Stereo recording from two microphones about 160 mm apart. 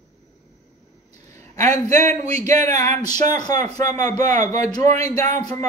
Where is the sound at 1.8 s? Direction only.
20° left (ahead or behind).